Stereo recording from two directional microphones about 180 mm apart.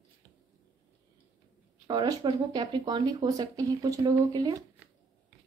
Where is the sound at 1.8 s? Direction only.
25° right (ahead or behind).